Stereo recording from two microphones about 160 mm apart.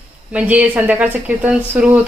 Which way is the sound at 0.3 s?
10° right (ahead or behind).